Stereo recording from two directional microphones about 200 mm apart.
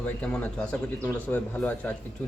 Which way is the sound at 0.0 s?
5° left (ahead or behind).